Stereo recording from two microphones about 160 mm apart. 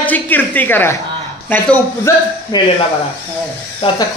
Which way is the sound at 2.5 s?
25° left (ahead or behind).